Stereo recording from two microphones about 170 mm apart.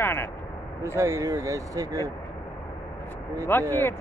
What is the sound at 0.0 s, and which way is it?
Speech, 15° left (ahead or behind).